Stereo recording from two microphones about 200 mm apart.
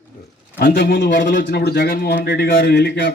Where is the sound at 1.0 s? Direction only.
65° left (ahead or behind).